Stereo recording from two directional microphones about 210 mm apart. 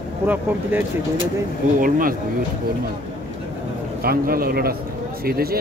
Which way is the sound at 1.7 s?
40° right (ahead or behind).